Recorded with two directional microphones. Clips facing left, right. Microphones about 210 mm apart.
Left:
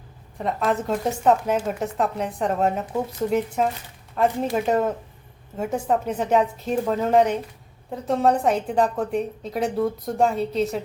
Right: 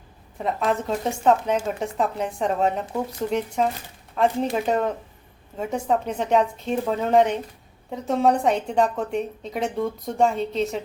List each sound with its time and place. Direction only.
0.3 s a woman's voice: centre (ahead or behind)